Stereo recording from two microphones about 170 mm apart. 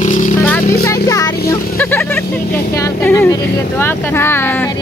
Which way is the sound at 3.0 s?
15° left (ahead or behind).